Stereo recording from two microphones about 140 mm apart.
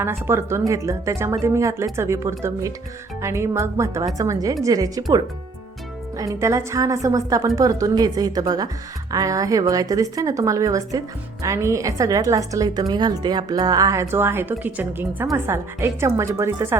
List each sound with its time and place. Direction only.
0.0 s a woman's voice: 20° right (ahead or behind)